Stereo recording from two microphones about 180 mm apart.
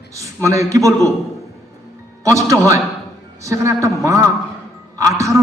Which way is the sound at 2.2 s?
15° right (ahead or behind).